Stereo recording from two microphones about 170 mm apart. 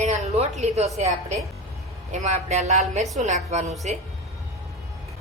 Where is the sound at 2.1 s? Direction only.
40° right (ahead or behind).